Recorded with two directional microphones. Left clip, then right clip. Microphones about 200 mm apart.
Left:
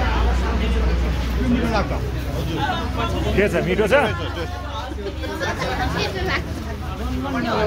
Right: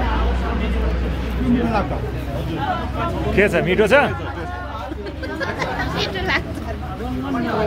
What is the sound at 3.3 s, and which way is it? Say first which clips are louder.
Speech: right 3 dB; 10° right (ahead or behind).